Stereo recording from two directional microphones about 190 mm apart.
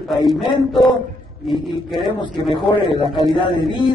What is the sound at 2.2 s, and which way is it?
A man's voice, 25° left (ahead or behind).